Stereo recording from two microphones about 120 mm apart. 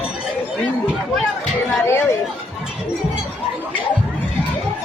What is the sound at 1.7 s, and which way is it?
Chatter, 20° left (ahead or behind).